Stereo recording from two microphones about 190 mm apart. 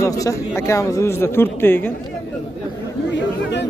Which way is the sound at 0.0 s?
15° left (ahead or behind).